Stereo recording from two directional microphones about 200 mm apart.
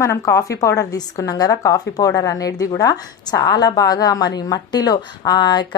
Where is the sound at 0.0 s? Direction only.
15° left (ahead or behind).